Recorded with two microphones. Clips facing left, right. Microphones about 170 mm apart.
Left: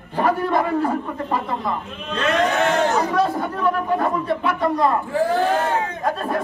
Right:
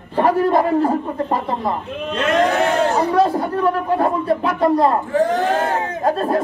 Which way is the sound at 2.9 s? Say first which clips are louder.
Right 4 dB; 30° right (ahead or behind).